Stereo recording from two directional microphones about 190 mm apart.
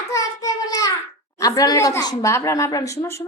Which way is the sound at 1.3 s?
20° left (ahead or behind).